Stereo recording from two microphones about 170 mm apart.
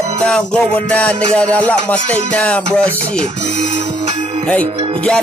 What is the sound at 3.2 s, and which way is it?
Speech, 40° right (ahead or behind).